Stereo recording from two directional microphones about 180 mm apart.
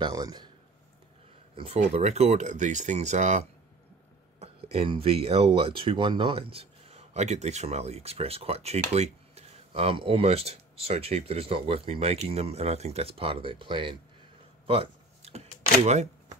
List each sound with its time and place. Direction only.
0.0 s a man's voice: 20° right (ahead or behind)
1.6 s speech: 35° right (ahead or behind)
4.7 s speech: 30° right (ahead or behind)
14.7 s a sound: 35° right (ahead or behind)
15.8 s speech: 40° right (ahead or behind)